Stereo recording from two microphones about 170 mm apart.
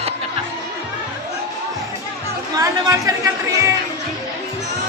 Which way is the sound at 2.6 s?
20° right (ahead or behind).